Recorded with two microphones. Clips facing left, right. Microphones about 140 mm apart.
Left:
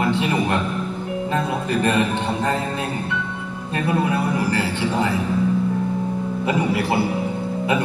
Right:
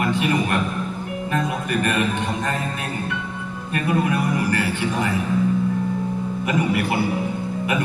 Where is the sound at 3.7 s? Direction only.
30° left (ahead or behind).